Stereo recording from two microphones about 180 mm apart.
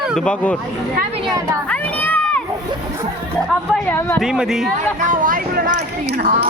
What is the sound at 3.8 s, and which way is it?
Speech, 15° left (ahead or behind).